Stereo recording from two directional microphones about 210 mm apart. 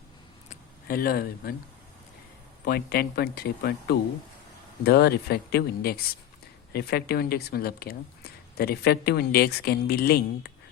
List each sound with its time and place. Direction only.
0.5 s speech: 45° left (ahead or behind)
2.6 s speech: 45° left (ahead or behind)